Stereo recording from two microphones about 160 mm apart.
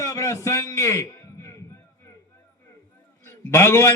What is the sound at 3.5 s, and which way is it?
Speech, 15° left (ahead or behind).